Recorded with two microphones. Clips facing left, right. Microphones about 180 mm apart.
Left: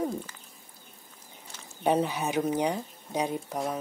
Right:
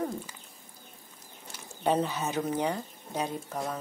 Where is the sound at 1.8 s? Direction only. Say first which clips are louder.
Left 2 dB; 10° left (ahead or behind).